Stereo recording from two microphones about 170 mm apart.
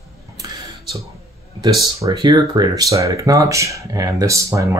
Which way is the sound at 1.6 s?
25° right (ahead or behind).